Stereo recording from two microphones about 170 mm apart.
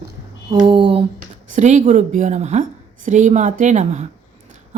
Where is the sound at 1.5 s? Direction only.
45° right (ahead or behind).